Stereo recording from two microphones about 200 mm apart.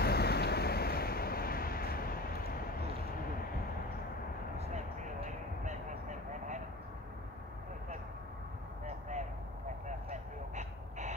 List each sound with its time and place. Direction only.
0.0 s vehicle: 55° left (ahead or behind)
5.2 s vehicle: 35° right (ahead or behind)
9.8 s vehicle: 35° right (ahead or behind)